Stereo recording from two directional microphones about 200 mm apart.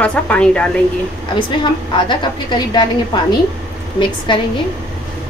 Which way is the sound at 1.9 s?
25° left (ahead or behind).